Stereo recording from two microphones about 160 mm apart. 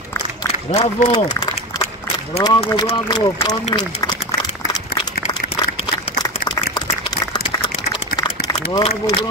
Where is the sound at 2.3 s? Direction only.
25° left (ahead or behind).